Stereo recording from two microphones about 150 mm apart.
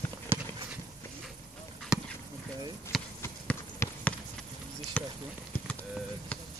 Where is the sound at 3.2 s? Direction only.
15° left (ahead or behind).